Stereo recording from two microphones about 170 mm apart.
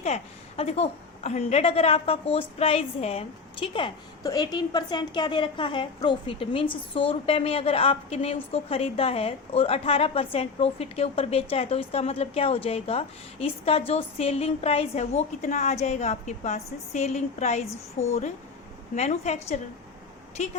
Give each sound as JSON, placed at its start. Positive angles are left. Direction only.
{"t": 0.0, "sound": "a woman's voice", "side_deg": 40}